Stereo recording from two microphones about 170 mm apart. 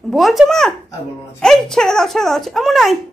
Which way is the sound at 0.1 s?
Centre (ahead or behind).